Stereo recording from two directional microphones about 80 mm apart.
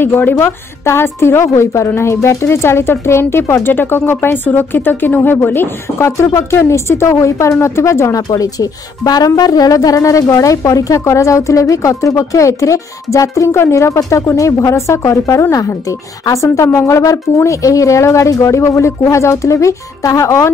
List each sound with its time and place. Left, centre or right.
0.0 s a woman's voice: left
8.3 s speech: left